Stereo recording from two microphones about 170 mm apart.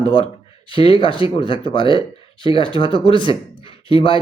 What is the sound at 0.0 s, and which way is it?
A man's voice, 30° left (ahead or behind).